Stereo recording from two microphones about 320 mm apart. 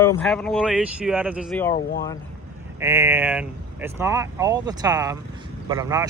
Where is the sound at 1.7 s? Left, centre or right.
Left.